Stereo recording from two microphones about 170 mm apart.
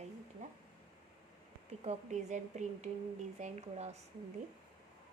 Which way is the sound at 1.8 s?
40° right (ahead or behind).